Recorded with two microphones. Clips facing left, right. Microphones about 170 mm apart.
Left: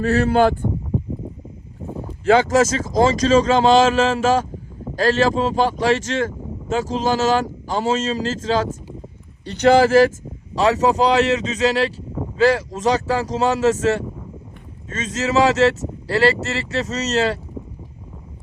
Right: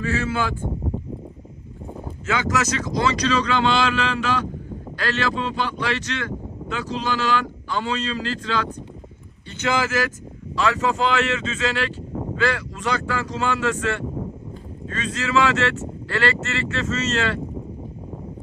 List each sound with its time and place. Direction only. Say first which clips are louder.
0.1 s speech: left 10 dB; 60° left (ahead or behind)
2.2 s speech: left 9 dB; 40° left (ahead or behind)
15.2 s speech: left 5 dB; 40° left (ahead or behind)